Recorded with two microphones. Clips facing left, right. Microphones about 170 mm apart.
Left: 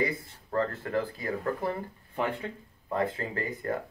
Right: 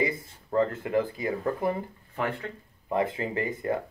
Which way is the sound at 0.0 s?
15° right (ahead or behind).